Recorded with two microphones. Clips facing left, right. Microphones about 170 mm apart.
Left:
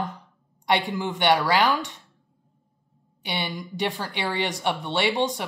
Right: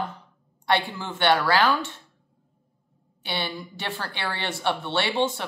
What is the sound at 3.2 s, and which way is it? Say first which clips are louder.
A woman's voice: even; 15° left (ahead or behind).